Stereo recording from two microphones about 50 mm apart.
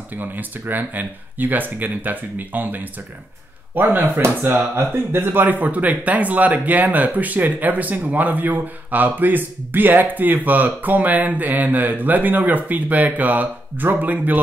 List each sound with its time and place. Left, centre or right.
0.1 s speech: right
4.7 s speech: right